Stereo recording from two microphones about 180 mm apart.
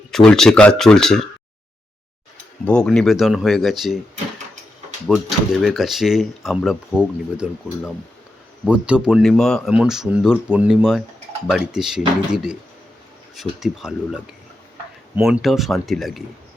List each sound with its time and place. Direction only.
0.1 s speech: centre (ahead or behind)
2.6 s speech: 5° left (ahead or behind)
5.0 s speech: centre (ahead or behind)
8.6 s speech: 5° right (ahead or behind)